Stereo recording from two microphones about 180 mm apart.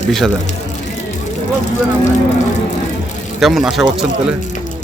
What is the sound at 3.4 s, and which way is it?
Speech, centre (ahead or behind).